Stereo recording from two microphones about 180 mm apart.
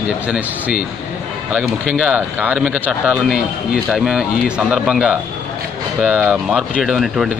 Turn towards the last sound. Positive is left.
turn(degrees=0)  # may be behind; listen again after turning